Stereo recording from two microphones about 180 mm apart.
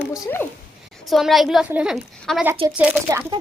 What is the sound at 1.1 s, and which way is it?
A woman's voice, centre (ahead or behind).